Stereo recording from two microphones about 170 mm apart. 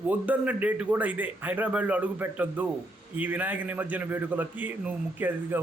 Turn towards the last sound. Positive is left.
turn(degrees=-10)  # may be behind; listen again after turning